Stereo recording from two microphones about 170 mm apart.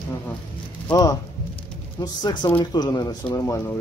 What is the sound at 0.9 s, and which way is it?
Speech, 20° left (ahead or behind).